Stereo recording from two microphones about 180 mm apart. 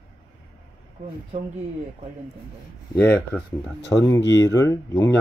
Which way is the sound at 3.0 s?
10° left (ahead or behind).